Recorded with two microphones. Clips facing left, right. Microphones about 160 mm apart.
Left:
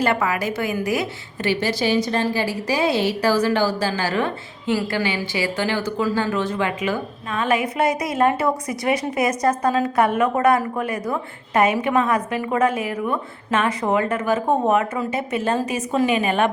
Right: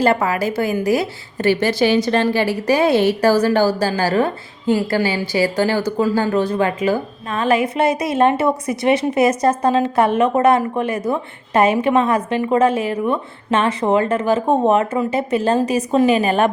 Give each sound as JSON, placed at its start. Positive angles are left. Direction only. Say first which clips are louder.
{"t": 0.0, "sound": "a woman's voice", "louder": "right 4 dB", "side_deg": -35}
{"t": 1.5, "sound": "a woman's voice", "louder": "right 5 dB", "side_deg": -60}